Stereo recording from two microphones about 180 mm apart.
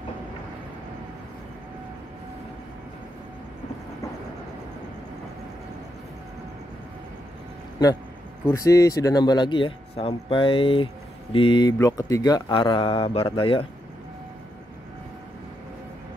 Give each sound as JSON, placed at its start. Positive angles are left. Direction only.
{"t": 8.5, "sound": "speech", "side_deg": 20}